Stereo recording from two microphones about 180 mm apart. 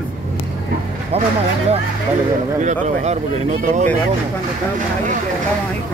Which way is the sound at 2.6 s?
40° right (ahead or behind).